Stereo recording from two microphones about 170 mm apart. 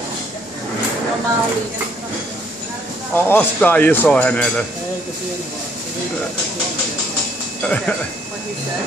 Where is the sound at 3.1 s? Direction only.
10° left (ahead or behind).